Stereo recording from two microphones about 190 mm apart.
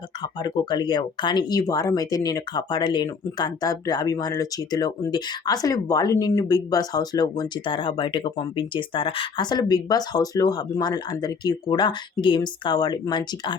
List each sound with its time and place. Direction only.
0.2 s speech: 20° left (ahead or behind)